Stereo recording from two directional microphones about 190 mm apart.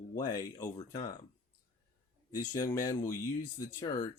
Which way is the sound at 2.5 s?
20° left (ahead or behind).